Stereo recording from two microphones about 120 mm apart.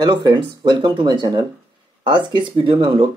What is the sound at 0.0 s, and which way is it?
Speech, 40° right (ahead or behind).